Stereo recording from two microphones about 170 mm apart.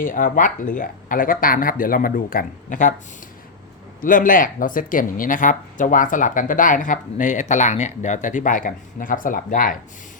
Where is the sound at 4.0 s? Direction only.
55° left (ahead or behind).